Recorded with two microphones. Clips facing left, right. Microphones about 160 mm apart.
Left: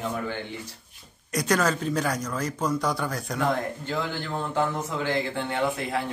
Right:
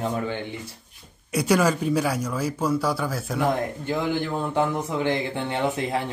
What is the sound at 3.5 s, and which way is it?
A man's voice, 15° right (ahead or behind).